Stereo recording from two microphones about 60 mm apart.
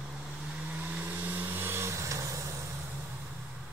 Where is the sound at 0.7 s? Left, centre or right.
Right.